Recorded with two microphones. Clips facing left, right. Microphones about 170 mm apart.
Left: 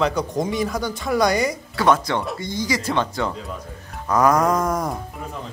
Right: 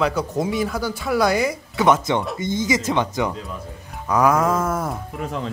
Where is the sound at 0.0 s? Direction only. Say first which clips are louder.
Even; 5° right (ahead or behind).